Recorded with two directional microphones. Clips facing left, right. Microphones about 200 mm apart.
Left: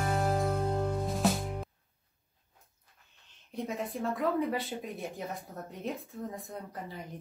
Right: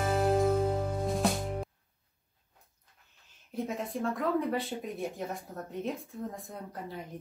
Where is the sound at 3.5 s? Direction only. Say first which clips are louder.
Right 1 dB; centre (ahead or behind).